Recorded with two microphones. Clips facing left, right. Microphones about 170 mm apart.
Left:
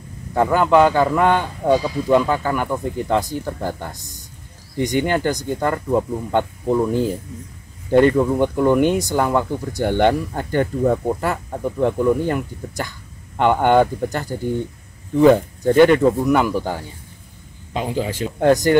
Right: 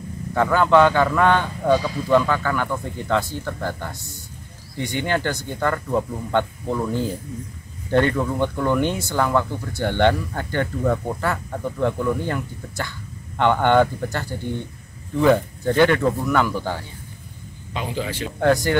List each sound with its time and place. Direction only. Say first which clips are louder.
0.3 s speech: left 2 dB; 15° left (ahead or behind)
10.6 s speech: left 4 dB; 25° left (ahead or behind)
15.3 s speech: left 5 dB; 15° left (ahead or behind)
17.7 s a man's voice: left 4 dB; 40° left (ahead or behind)
18.2 s speech: left 3 dB; 15° left (ahead or behind)